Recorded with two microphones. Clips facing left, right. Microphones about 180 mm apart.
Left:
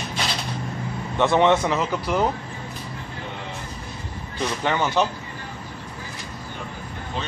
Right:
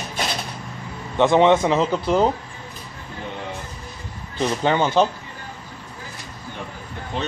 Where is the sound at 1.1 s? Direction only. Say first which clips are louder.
Right 3 dB; 15° right (ahead or behind).